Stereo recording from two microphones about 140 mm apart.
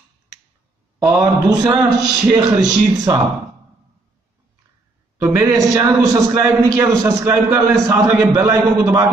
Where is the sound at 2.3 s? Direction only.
30° right (ahead or behind).